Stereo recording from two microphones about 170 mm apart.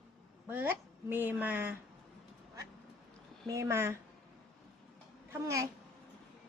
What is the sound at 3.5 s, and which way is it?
Speech, 15° right (ahead or behind).